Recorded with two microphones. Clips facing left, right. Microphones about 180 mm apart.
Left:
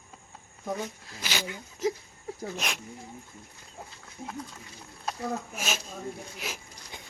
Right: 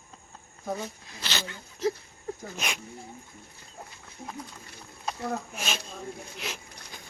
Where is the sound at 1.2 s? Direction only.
10° left (ahead or behind).